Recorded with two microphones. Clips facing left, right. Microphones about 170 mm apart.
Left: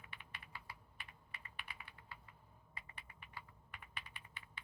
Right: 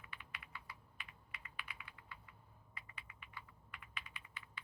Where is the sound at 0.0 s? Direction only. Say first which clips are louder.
Right 1 dB; 30° left (ahead or behind).